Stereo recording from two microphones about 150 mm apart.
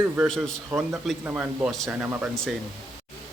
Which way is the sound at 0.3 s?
5° left (ahead or behind).